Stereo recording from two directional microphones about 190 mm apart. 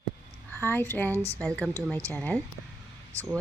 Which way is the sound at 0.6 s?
10° left (ahead or behind).